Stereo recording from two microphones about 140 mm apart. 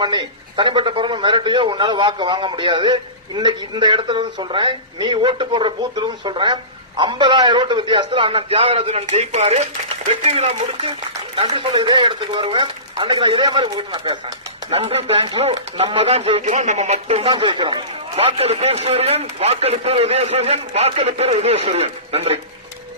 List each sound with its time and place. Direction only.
0.0 s a man's voice: 30° right (ahead or behind); by 17.3 s 50° right (ahead or behind)
17.3 s a man's voice: 35° right (ahead or behind)